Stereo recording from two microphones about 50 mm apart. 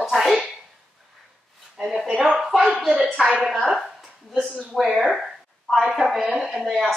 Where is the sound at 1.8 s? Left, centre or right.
Centre.